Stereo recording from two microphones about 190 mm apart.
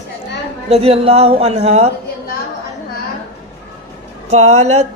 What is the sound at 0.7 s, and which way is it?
A woman's voice, 30° right (ahead or behind).